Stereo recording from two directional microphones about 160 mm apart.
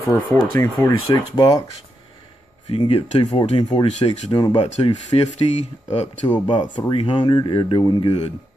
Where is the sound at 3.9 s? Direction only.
40° left (ahead or behind).